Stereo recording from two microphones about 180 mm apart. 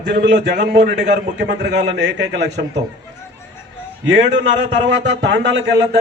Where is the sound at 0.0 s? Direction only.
70° right (ahead or behind).